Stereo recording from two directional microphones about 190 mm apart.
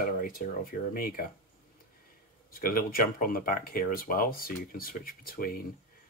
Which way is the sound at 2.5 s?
50° left (ahead or behind).